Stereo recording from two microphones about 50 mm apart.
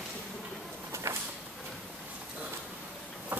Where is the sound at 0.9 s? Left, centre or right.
Right.